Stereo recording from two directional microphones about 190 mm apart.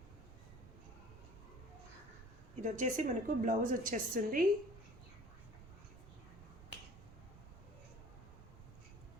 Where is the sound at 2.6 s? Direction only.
40° right (ahead or behind).